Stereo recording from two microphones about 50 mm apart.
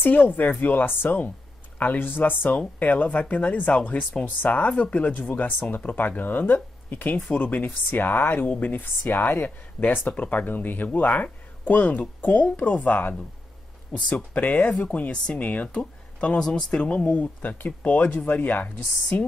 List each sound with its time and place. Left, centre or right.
0.0 s speech: left
16.3 s speech: centre
16.8 s speech: left
17.4 s speech: left